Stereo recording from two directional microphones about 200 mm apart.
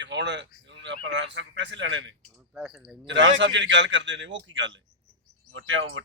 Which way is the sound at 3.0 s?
65° right (ahead or behind).